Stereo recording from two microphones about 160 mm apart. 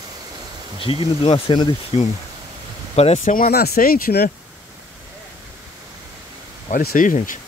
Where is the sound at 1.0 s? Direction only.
40° left (ahead or behind).